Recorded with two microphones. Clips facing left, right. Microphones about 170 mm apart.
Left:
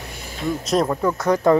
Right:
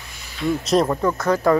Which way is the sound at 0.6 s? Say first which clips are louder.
Right 1 dB; centre (ahead or behind).